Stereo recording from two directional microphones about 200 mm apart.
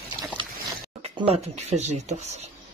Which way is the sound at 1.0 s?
25° right (ahead or behind).